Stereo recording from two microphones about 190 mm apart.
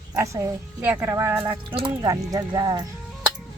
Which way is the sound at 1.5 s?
25° right (ahead or behind).